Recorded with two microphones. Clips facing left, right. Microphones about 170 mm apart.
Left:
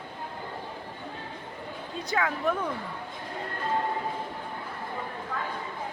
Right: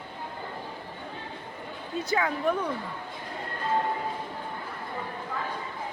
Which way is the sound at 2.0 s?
Centre (ahead or behind).